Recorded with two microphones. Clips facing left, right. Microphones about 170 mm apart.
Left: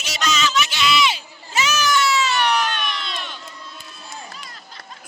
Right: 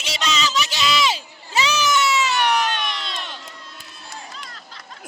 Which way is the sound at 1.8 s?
20° right (ahead or behind).